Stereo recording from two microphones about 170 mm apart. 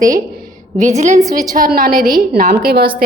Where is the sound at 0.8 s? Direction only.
45° right (ahead or behind).